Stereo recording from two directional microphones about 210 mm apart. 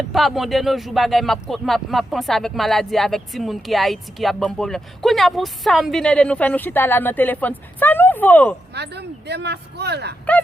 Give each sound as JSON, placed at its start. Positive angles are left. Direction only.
{"t": 0.1, "sound": "speech", "side_deg": 0}
{"t": 8.7, "sound": "speech", "side_deg": -50}